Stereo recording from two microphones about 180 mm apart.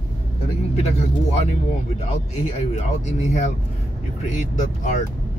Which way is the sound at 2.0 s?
35° left (ahead or behind).